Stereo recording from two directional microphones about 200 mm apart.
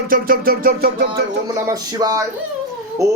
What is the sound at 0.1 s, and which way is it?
Music, 45° right (ahead or behind).